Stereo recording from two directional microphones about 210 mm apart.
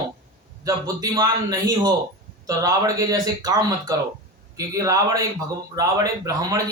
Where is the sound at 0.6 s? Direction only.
15° right (ahead or behind).